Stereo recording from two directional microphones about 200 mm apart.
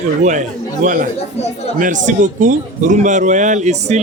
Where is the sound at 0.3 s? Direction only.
40° right (ahead or behind).